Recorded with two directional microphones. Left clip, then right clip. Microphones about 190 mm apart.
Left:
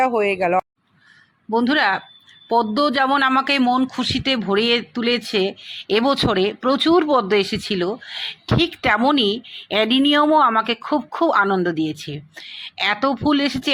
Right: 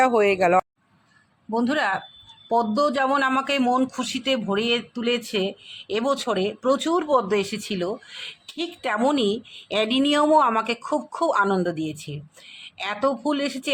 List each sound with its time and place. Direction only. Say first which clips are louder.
0.0 s speech: even; 5° left (ahead or behind)
1.5 s speech: left 5 dB; 15° left (ahead or behind)
9.0 s speech: left 4 dB; 10° left (ahead or behind)